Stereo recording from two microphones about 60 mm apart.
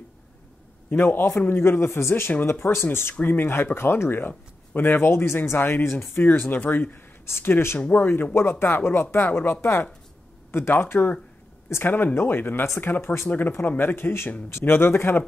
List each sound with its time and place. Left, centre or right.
0.8 s speech: left
3.2 s speech: left
7.2 s speech: left
7.8 s speech: left
8.4 s speech: left